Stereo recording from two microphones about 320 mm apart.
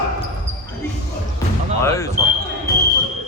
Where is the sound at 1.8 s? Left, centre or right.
Centre.